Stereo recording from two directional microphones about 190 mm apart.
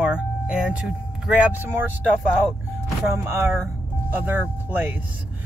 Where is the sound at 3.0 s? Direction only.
15° right (ahead or behind).